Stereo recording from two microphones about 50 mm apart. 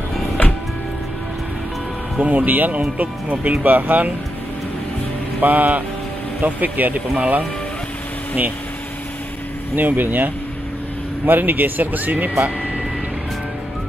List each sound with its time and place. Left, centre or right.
2.2 s speech: right
5.4 s speech: right
9.8 s speech: right